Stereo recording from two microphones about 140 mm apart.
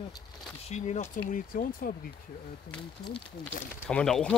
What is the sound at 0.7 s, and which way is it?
Speech, 55° left (ahead or behind).